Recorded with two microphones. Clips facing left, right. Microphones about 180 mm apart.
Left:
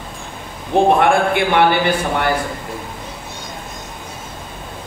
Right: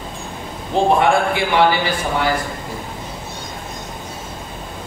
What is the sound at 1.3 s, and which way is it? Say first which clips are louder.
Speech: left 2 dB; 60° left (ahead or behind).